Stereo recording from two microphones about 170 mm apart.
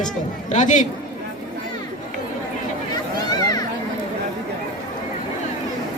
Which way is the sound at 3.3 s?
25° left (ahead or behind).